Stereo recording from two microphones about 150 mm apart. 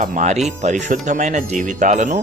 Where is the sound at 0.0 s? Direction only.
55° right (ahead or behind).